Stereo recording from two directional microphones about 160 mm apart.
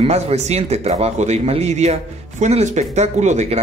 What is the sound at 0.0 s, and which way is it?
Speech, 40° right (ahead or behind).